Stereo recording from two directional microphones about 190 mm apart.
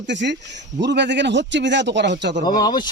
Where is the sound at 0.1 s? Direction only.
65° right (ahead or behind).